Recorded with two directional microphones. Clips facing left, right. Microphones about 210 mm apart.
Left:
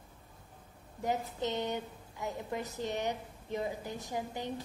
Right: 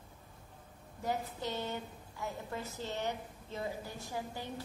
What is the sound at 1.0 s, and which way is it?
A woman's voice, 20° left (ahead or behind).